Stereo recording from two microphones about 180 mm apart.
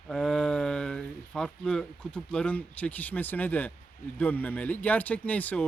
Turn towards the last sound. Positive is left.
turn(degrees=10)  # may be behind; listen again after turning